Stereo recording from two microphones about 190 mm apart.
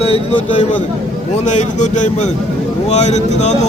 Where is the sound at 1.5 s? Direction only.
40° left (ahead or behind).